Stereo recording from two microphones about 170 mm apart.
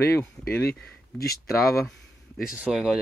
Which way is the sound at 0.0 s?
10° left (ahead or behind).